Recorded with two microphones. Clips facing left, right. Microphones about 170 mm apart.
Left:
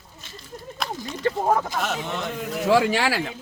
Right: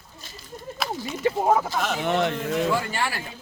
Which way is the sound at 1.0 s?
5° right (ahead or behind).